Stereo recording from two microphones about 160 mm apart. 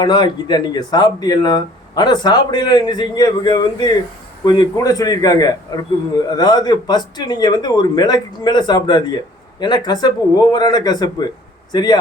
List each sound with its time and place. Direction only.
0.0 s speech: 25° left (ahead or behind)